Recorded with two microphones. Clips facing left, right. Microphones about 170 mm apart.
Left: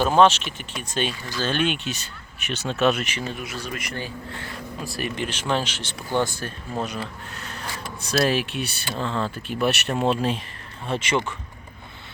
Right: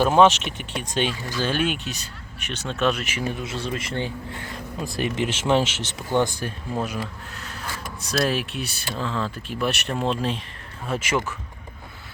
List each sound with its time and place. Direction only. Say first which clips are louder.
0.0 s speech: right 1 dB; 15° right (ahead or behind)
3.3 s speech: right 3 dB; 25° right (ahead or behind); by 7.0 s 10° right (ahead or behind)
7.3 s a sound: left 1 dB; centre (ahead or behind)
8.0 s speech: left 2 dB; centre (ahead or behind)